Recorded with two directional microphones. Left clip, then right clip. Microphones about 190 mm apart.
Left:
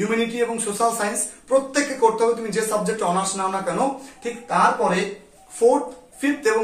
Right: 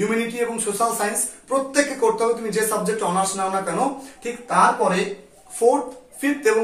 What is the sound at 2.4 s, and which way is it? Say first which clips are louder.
Speech: right 1 dB; centre (ahead or behind).